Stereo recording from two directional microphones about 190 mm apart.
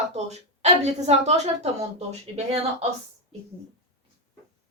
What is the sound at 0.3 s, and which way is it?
A woman's voice, 35° right (ahead or behind).